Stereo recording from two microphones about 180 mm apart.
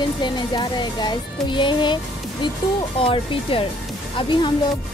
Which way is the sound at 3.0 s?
30° left (ahead or behind).